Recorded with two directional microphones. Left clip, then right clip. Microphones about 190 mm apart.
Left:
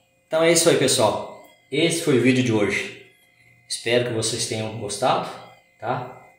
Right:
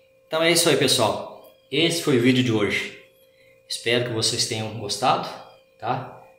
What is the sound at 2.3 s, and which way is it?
Speech, centre (ahead or behind).